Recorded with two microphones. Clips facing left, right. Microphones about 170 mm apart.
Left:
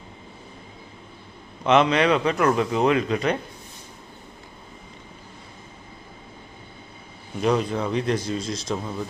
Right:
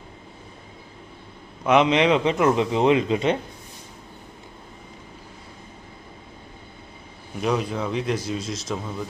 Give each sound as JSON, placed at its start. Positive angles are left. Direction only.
{"t": 1.6, "sound": "speech", "side_deg": -15}
{"t": 7.4, "sound": "speech", "side_deg": -5}